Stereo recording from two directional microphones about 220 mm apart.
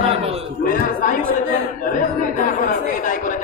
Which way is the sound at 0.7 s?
40° left (ahead or behind).